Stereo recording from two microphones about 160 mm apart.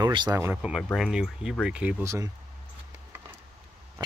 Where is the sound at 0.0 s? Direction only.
25° right (ahead or behind).